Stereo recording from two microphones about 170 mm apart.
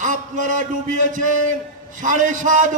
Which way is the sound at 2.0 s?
50° right (ahead or behind).